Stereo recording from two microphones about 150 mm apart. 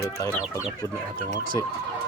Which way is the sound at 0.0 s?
20° left (ahead or behind).